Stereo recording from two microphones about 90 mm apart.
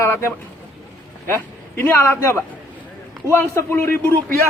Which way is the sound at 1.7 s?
25° left (ahead or behind).